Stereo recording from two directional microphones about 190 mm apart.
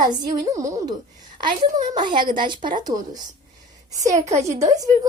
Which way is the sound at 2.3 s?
25° right (ahead or behind).